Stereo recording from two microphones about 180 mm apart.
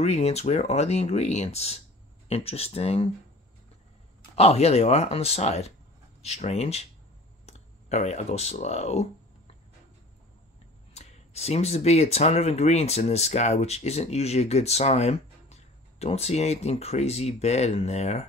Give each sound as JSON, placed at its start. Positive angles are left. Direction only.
{"t": 0.0, "sound": "speech", "side_deg": 35}
{"t": 4.4, "sound": "speech", "side_deg": 35}
{"t": 10.9, "sound": "speech", "side_deg": 40}